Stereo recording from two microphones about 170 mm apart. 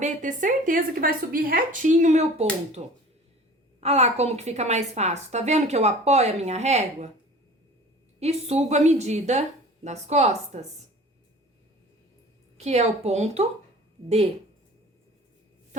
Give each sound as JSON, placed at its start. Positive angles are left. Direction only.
{"t": 0.0, "sound": "a woman's voice", "side_deg": -50}
{"t": 8.2, "sound": "a woman's voice", "side_deg": -40}
{"t": 12.5, "sound": "a woman's voice", "side_deg": -40}